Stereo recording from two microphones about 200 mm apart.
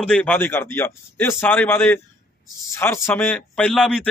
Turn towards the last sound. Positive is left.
turn(degrees=5)  # may be behind; listen again after turning